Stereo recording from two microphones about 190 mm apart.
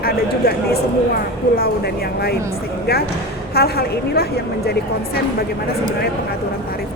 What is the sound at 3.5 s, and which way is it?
Speech, 55° left (ahead or behind).